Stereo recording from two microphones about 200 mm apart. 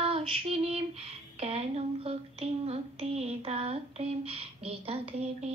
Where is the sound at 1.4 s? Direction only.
30° right (ahead or behind).